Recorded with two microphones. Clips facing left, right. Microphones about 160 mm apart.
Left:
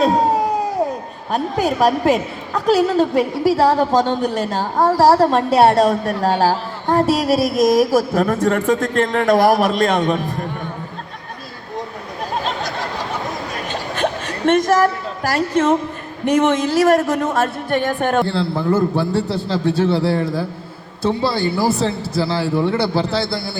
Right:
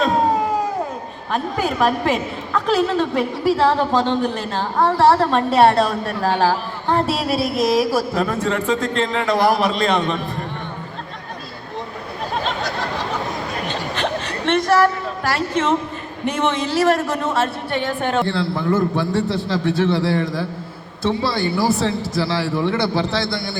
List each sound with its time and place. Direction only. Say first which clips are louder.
1.3 s a woman's voice: left 3 dB; 40° left (ahead or behind)
6.4 s a sound: left 1 dB; 40° left (ahead or behind)
7.1 s speech: left 4 dB; 45° left (ahead or behind)
13.9 s a sound: left 4 dB; 45° left (ahead or behind)
16.2 s speech: left 5 dB; 45° left (ahead or behind)
18.3 s a woman's voice: left 1 dB; 35° left (ahead or behind)